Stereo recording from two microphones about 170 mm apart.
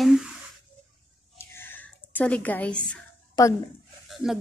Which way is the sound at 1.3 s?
15° left (ahead or behind).